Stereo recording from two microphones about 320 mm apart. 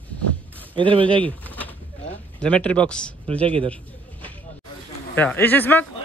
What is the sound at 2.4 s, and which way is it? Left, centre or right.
Speech, centre.